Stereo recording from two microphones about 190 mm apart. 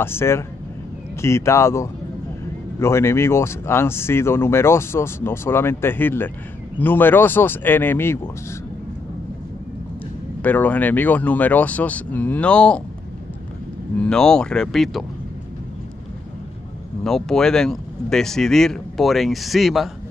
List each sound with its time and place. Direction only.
0.0 s speech: 15° left (ahead or behind)
10.4 s speech: 10° left (ahead or behind)
13.9 s speech: 5° left (ahead or behind)
17.0 s speech: 5° left (ahead or behind)